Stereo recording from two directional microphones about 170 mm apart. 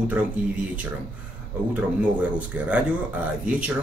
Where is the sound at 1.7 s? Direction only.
10° right (ahead or behind).